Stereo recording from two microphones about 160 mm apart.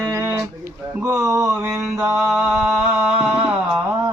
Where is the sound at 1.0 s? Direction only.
15° right (ahead or behind).